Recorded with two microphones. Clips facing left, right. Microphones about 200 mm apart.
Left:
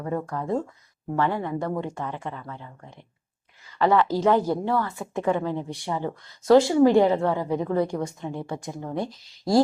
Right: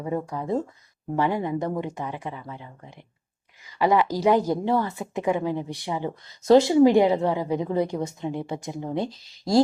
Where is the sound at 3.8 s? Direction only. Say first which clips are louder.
Even; 15° right (ahead or behind).